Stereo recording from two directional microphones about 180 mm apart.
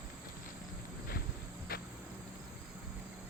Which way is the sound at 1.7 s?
55° left (ahead or behind).